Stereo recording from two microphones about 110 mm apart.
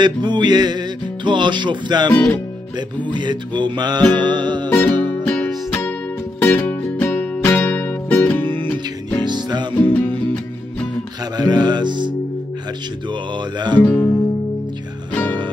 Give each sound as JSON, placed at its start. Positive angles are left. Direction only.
{"t": 0.0, "sound": "music", "side_deg": -45}
{"t": 2.1, "sound": "music", "side_deg": 15}
{"t": 3.1, "sound": "music", "side_deg": -45}
{"t": 5.2, "sound": "music", "side_deg": 10}
{"t": 9.2, "sound": "music", "side_deg": -40}
{"t": 9.8, "sound": "music", "side_deg": 15}
{"t": 11.3, "sound": "music", "side_deg": -40}
{"t": 13.1, "sound": "music", "side_deg": -40}
{"t": 13.8, "sound": "music", "side_deg": 20}